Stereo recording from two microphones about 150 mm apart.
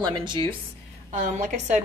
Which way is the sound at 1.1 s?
55° right (ahead or behind).